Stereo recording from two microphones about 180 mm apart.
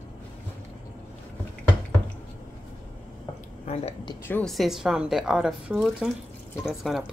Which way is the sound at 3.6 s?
35° left (ahead or behind).